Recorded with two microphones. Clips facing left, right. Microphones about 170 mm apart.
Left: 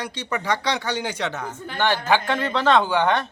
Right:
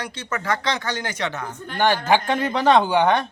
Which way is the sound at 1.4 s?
5° left (ahead or behind).